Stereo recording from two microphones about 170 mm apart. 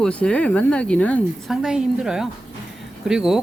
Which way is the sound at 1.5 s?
5° right (ahead or behind).